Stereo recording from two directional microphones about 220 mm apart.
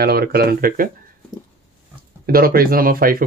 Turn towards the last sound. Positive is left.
turn(degrees=-40)  # may be behind; listen again after turning